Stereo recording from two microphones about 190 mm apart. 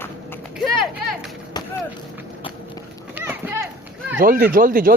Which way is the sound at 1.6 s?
20° left (ahead or behind).